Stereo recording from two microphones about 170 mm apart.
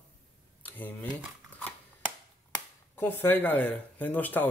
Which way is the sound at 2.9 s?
10° left (ahead or behind).